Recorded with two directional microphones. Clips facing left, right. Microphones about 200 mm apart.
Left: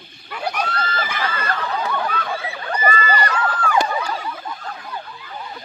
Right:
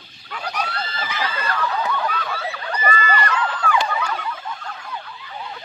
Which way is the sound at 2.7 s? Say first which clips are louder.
Left 2 dB; 35° left (ahead or behind).